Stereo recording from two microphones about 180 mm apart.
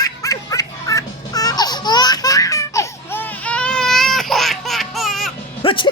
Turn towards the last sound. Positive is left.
turn(degrees=25)  # may be behind; listen again after turning